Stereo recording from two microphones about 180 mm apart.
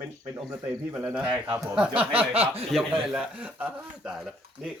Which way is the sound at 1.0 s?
10° right (ahead or behind).